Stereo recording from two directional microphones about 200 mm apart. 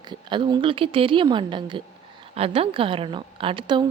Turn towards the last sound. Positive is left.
turn(degrees=-25)  # may be behind; listen again after turning